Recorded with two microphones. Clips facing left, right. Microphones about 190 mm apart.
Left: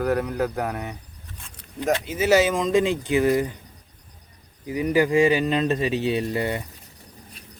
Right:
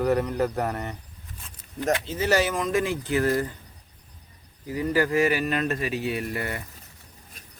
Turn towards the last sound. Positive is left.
turn(degrees=25)  # may be behind; listen again after turning